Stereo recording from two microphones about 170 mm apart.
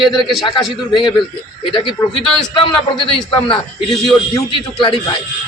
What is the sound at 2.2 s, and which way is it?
Speech, 5° left (ahead or behind).